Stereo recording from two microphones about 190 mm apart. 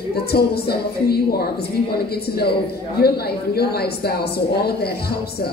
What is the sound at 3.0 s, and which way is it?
A woman's voice, 55° left (ahead or behind).